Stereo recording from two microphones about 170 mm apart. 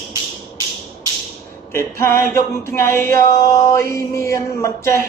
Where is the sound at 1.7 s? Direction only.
15° left (ahead or behind).